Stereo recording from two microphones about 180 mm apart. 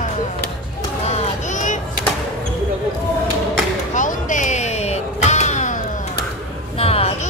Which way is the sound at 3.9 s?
45° left (ahead or behind).